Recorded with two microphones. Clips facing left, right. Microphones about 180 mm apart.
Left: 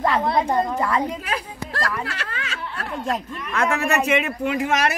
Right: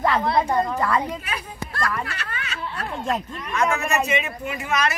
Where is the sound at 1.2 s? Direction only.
90° left.